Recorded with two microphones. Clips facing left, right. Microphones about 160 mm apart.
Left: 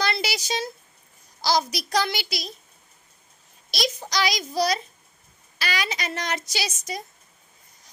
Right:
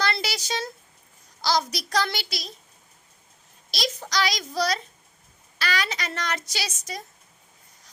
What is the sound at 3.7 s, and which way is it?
A child's voice, 15° left (ahead or behind).